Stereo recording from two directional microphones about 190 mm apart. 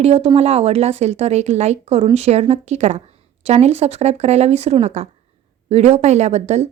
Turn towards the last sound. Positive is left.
turn(degrees=-35)  # may be behind; listen again after turning